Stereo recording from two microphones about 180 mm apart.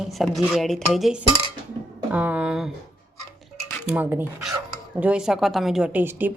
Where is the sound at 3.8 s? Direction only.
10° right (ahead or behind).